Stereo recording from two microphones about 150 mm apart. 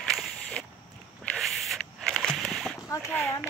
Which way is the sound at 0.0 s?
5° left (ahead or behind).